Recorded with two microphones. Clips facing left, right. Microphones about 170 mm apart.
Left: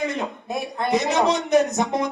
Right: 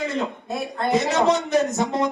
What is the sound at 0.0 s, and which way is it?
Speech, 15° left (ahead or behind).